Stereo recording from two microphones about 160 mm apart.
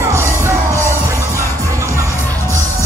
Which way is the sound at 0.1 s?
15° right (ahead or behind).